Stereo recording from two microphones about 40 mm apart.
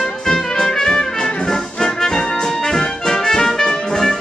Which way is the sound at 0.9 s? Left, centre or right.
Centre.